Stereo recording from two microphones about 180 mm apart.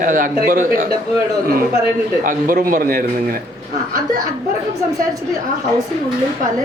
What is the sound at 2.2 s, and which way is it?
Speech, 50° right (ahead or behind).